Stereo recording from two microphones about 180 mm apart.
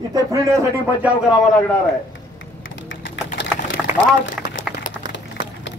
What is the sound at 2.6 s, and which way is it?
Typing, 90° left.